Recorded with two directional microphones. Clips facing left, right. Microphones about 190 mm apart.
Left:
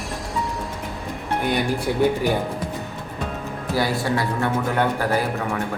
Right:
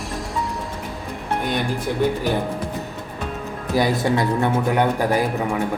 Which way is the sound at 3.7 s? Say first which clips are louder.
Right 3 dB; 20° right (ahead or behind).